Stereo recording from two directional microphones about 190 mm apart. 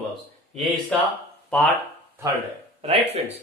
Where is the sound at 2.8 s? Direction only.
35° right (ahead or behind).